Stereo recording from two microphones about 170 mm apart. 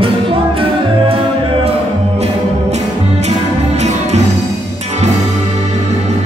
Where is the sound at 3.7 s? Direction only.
40° right (ahead or behind).